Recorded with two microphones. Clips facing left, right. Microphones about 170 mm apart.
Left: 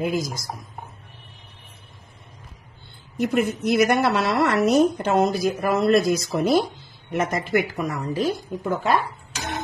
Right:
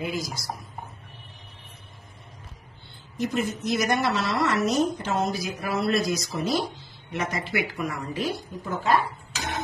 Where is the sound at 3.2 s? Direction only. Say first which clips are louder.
Left 5 dB; 60° left (ahead or behind); by 8.3 s 40° left (ahead or behind).